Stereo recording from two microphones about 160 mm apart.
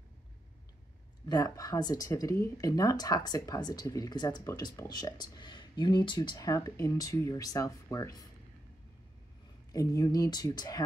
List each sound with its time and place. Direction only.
1.3 s speech: 20° left (ahead or behind)
9.7 s speech: 20° left (ahead or behind)